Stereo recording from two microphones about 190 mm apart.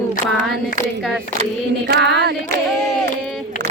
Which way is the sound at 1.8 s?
60° right (ahead or behind).